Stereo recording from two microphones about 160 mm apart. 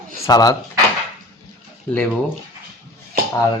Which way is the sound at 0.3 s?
25° left (ahead or behind).